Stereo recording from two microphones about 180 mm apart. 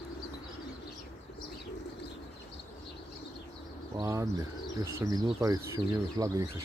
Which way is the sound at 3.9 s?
20° right (ahead or behind).